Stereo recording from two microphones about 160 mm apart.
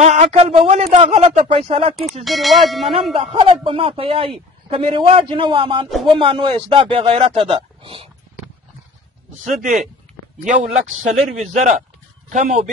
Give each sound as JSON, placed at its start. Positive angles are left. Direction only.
{"t": 0.0, "sound": "a man's voice", "side_deg": -45}
{"t": 2.2, "sound": "speech", "side_deg": 0}
{"t": 2.9, "sound": "a man's voice", "side_deg": -35}
{"t": 9.4, "sound": "speech", "side_deg": -50}